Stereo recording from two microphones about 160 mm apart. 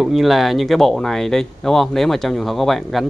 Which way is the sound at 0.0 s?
Centre (ahead or behind).